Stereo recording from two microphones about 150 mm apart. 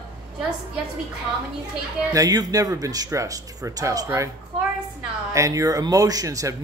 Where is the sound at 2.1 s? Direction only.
25° right (ahead or behind).